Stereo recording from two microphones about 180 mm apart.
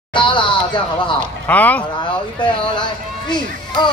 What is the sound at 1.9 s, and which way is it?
A woman's voice, 25° left (ahead or behind).